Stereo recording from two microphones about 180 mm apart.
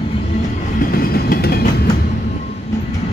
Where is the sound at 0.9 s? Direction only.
55° left (ahead or behind).